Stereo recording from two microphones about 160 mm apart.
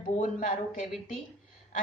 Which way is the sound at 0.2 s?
55° left (ahead or behind).